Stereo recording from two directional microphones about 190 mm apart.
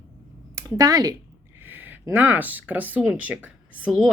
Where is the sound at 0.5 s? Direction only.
20° right (ahead or behind).